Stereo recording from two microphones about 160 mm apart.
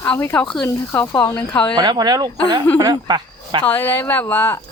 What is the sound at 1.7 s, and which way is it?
Speech, 25° right (ahead or behind).